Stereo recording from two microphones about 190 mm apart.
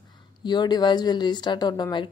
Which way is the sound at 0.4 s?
25° left (ahead or behind).